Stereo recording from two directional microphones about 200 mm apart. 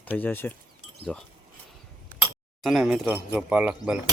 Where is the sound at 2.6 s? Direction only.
Centre (ahead or behind).